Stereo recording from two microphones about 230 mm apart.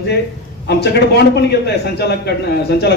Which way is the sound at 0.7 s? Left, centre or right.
Left.